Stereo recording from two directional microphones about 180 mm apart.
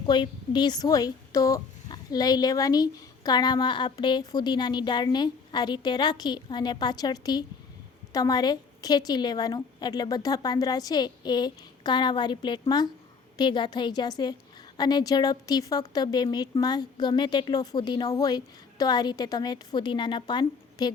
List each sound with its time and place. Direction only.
0.0 s a woman's voice: 25° left (ahead or behind)